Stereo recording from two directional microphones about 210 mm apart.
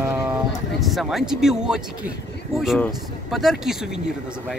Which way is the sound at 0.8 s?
Centre (ahead or behind).